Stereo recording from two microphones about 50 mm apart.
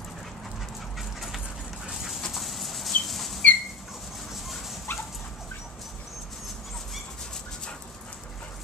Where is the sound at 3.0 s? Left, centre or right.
Centre.